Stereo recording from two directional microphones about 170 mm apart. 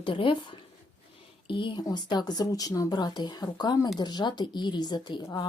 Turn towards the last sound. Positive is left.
turn(degrees=25)  # may be behind; listen again after turning